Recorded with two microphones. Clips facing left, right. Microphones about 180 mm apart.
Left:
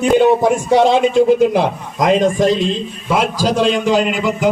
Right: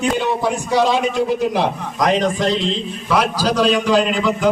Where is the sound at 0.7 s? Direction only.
25° left (ahead or behind).